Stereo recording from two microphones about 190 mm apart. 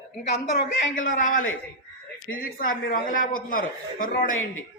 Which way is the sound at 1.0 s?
45° left (ahead or behind).